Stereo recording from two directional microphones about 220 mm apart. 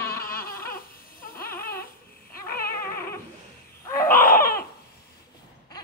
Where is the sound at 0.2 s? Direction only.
40° left (ahead or behind).